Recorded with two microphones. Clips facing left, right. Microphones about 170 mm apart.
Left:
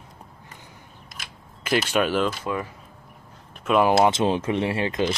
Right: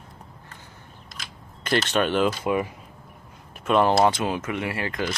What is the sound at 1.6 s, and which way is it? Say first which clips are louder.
Speech: left 1 dB; 10° left (ahead or behind).